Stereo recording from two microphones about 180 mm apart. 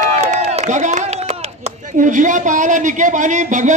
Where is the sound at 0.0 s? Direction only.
40° right (ahead or behind).